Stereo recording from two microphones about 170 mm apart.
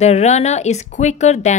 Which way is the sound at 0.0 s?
40° left (ahead or behind).